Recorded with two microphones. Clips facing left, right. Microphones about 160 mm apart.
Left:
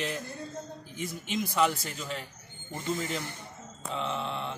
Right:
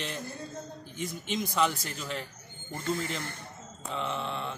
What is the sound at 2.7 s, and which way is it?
Speech, 15° left (ahead or behind).